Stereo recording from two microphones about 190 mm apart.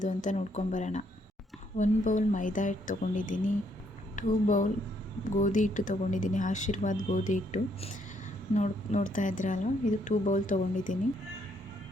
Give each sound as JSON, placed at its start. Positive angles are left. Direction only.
{"t": 0.0, "sound": "a woman's voice", "side_deg": 40}